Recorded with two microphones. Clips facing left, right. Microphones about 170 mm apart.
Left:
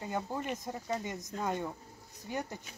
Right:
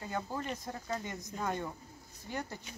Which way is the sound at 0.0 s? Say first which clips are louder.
Left 2 dB; 15° left (ahead or behind).